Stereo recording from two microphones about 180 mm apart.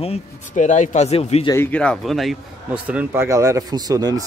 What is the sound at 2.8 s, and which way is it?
Speech, 10° right (ahead or behind).